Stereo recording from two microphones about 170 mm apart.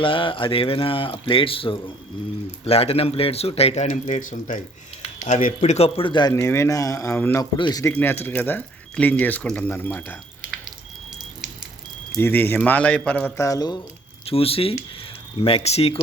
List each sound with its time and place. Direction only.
0.0 s speech: 30° left (ahead or behind)
6.4 s speech: 15° left (ahead or behind)
7.5 s a man's voice: 25° left (ahead or behind)
10.4 s drip: 5° right (ahead or behind)
12.1 s speech: 10° left (ahead or behind)
14.3 s speech: 35° left (ahead or behind)